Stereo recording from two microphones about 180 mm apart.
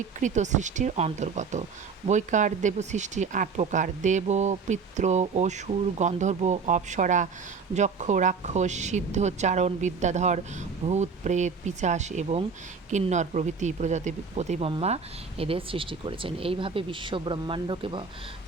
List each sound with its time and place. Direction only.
0.2 s speech: 40° right (ahead or behind); by 18.0 s 25° right (ahead or behind)